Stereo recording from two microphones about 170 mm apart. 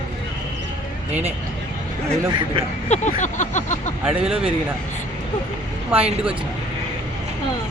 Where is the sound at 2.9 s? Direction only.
45° left (ahead or behind).